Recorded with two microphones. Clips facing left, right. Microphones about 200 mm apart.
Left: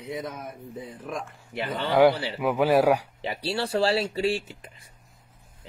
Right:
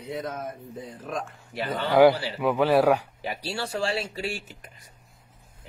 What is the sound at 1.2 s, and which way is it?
Speech, 20° left (ahead or behind).